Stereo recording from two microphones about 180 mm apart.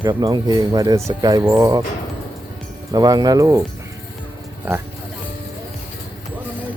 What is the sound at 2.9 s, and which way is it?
Speech, 20° right (ahead or behind).